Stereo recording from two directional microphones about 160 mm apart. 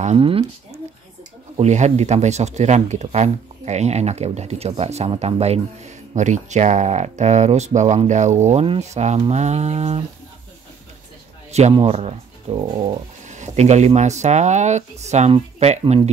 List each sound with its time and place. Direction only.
0.0 s speech: 40° right (ahead or behind)
1.6 s speech: 45° right (ahead or behind)
11.5 s speech: 40° right (ahead or behind)